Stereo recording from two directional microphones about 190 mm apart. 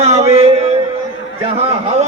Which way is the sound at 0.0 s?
35° right (ahead or behind).